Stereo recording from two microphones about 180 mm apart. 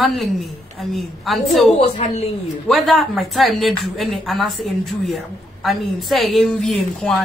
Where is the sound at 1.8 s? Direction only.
35° left (ahead or behind).